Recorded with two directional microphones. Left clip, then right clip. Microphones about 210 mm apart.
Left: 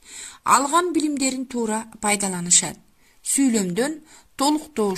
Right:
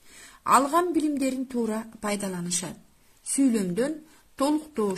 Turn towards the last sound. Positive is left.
turn(degrees=35)  # may be behind; listen again after turning